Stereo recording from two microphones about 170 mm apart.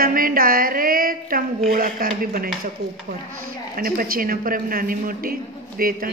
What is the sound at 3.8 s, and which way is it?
Speech, 55° right (ahead or behind).